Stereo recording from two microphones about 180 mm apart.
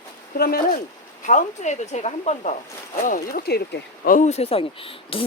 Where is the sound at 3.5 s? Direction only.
60° left (ahead or behind).